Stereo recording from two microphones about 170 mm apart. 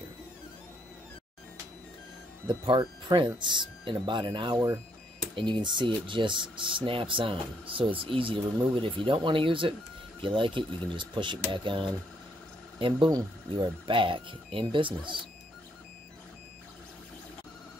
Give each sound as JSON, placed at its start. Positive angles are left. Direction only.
{"t": 2.4, "sound": "speech", "side_deg": -30}